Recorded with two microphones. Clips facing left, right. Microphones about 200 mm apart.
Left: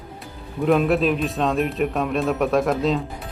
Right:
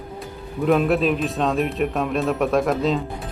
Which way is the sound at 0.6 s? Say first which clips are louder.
Even; centre (ahead or behind).